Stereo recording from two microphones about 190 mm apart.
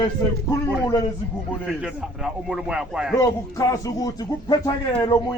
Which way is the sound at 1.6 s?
5° right (ahead or behind).